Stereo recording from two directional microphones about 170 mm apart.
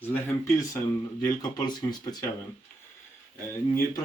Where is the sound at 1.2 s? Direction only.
20° left (ahead or behind).